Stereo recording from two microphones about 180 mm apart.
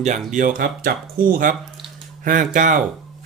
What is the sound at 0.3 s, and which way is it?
Speech, 50° right (ahead or behind).